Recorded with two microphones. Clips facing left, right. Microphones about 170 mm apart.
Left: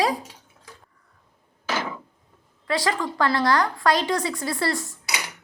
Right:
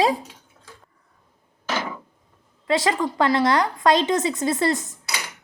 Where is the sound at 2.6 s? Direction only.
20° right (ahead or behind).